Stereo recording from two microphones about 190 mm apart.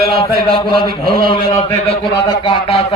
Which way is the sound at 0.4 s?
25° left (ahead or behind).